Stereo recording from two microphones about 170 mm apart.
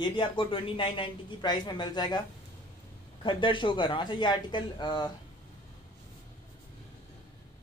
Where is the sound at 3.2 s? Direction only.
30° left (ahead or behind).